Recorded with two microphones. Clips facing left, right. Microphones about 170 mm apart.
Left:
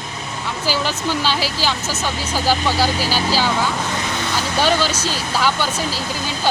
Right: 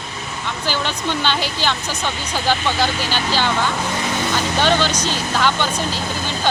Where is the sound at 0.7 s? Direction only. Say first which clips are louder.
Left 2 dB; 5° left (ahead or behind).